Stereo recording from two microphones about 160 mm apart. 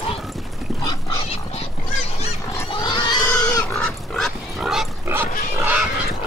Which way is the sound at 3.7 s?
5° left (ahead or behind).